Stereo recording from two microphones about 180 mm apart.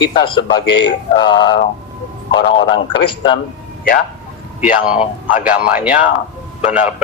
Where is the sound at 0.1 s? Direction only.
25° left (ahead or behind).